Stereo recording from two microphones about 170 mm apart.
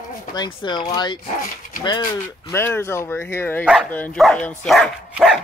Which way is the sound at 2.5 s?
15° left (ahead or behind).